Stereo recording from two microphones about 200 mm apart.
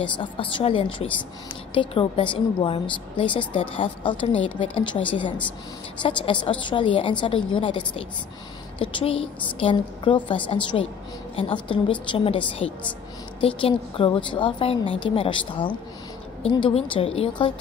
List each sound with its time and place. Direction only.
0.0 s a woman's voice: 25° left (ahead or behind)